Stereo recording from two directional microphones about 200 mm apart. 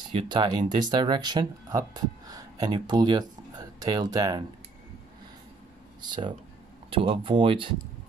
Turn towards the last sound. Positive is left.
turn(degrees=-25)  # may be behind; listen again after turning